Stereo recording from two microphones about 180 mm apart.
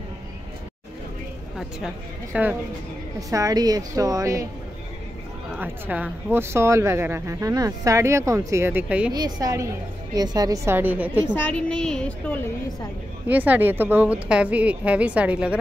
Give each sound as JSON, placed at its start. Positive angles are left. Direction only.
{"t": 2.3, "sound": "speech", "side_deg": -10}
{"t": 3.2, "sound": "a woman's voice", "side_deg": -20}
{"t": 5.6, "sound": "speech", "side_deg": -10}
{"t": 9.1, "sound": "a woman's voice", "side_deg": -20}
{"t": 11.3, "sound": "speech", "side_deg": 5}
{"t": 13.3, "sound": "speech", "side_deg": -10}